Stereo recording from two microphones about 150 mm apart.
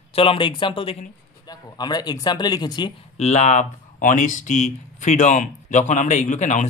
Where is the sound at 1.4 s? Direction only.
25° left (ahead or behind).